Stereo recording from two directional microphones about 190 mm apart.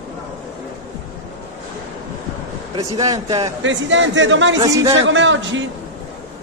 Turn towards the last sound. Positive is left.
turn(degrees=-75)  # may be behind; listen again after turning